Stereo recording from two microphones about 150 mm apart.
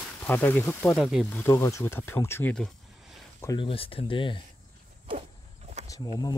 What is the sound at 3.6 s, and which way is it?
Speech, 35° left (ahead or behind).